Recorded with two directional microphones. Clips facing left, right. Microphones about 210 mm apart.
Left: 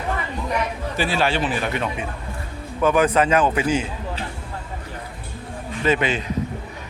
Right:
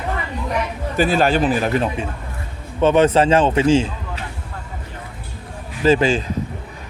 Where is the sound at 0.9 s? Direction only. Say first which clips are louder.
Right 6 dB; 45° right (ahead or behind); by 3.8 s 25° right (ahead or behind).